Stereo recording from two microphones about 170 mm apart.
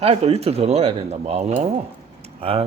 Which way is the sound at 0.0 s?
35° right (ahead or behind).